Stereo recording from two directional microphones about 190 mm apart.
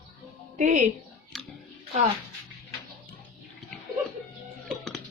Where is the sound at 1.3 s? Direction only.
Centre (ahead or behind).